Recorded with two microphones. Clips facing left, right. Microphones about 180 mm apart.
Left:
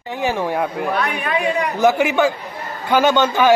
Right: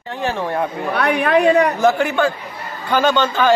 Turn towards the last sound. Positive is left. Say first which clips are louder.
# left 1 dB
turn(degrees=15)  # may be behind; listen again after turning